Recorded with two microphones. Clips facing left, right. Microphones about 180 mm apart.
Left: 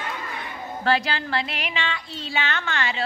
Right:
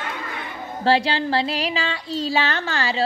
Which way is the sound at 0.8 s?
30° right (ahead or behind).